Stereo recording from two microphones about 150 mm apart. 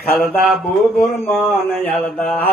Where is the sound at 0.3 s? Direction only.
Centre (ahead or behind).